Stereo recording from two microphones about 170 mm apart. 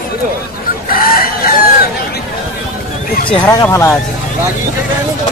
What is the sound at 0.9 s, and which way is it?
Chicken, 60° left (ahead or behind).